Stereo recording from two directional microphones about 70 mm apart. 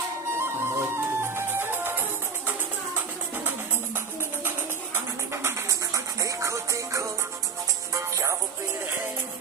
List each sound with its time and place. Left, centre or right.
0.3 s music: right
4.9 s music: right
5.9 s music: right